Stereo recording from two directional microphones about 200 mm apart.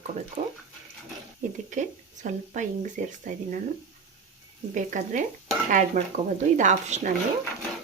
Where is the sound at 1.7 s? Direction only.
40° right (ahead or behind).